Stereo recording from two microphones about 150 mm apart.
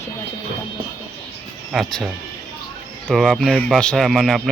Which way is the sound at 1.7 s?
Centre (ahead or behind).